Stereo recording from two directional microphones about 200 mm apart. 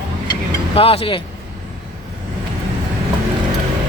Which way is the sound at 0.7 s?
30° left (ahead or behind).